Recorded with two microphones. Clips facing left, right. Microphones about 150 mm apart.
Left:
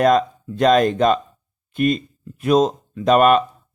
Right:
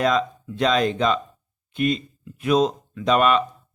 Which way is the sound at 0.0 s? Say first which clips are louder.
Left 5 dB; 50° left (ahead or behind).